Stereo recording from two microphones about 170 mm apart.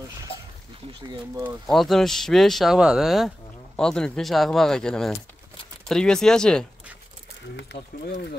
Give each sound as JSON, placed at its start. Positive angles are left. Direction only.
{"t": 1.7, "sound": "speech", "side_deg": 0}
{"t": 7.5, "sound": "speech", "side_deg": 70}